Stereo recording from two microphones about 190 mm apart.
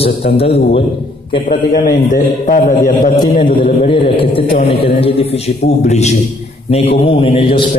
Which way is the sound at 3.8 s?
30° left (ahead or behind).